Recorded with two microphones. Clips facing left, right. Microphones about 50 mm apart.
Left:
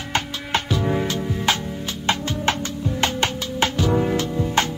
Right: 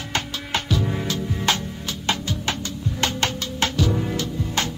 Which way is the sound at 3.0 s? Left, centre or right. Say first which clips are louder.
Left 1 dB; centre.